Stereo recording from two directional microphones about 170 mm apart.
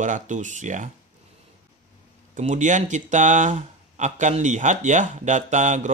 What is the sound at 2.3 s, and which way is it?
Speech, 45° right (ahead or behind).